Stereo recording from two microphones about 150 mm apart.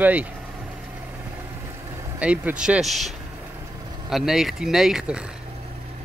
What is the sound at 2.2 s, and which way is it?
A man's voice, 10° right (ahead or behind).